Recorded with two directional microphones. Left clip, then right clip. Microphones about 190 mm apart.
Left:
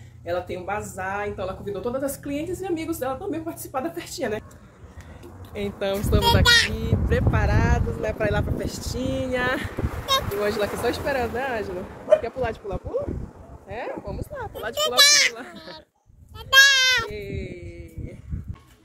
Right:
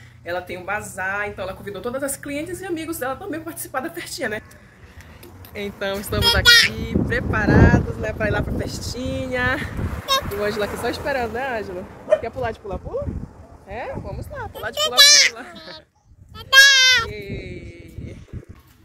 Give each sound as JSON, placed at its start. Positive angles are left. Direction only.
{"t": 0.2, "sound": "speech", "side_deg": 5}
{"t": 5.5, "sound": "speech", "side_deg": 0}
{"t": 6.4, "sound": "a child's voice", "side_deg": 15}
{"t": 6.7, "sound": "speech", "side_deg": 0}
{"t": 10.1, "sound": "a sound", "side_deg": 5}
{"t": 10.4, "sound": "speech", "side_deg": -30}
{"t": 14.6, "sound": "speech", "side_deg": 0}
{"t": 15.0, "sound": "a child's voice", "side_deg": 20}
{"t": 16.3, "sound": "child singing", "side_deg": 15}
{"t": 17.1, "sound": "baby cry", "side_deg": -5}